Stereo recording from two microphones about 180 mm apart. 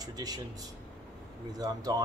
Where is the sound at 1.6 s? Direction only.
20° right (ahead or behind).